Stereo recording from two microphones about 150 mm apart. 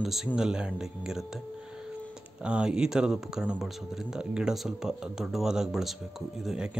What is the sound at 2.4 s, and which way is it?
Speech, 5° right (ahead or behind).